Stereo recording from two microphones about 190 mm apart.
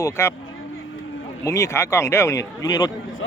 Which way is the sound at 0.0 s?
15° left (ahead or behind).